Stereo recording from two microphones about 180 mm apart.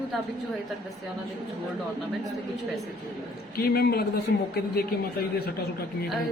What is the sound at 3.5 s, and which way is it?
Speech, 60° left (ahead or behind).